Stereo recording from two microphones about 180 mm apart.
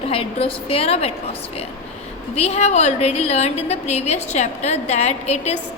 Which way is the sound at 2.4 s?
35° left (ahead or behind).